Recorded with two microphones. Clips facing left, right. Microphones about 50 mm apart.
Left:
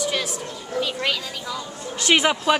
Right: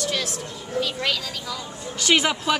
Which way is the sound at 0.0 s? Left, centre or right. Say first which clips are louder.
Left 2 dB; centre.